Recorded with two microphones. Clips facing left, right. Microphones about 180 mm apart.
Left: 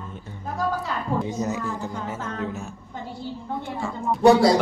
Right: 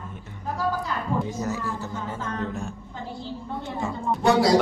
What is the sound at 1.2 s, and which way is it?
Speech, 20° left (ahead or behind).